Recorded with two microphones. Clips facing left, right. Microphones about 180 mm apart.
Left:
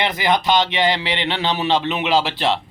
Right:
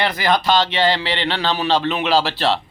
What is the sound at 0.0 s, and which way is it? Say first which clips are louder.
Speech: right 1 dB; 20° left (ahead or behind).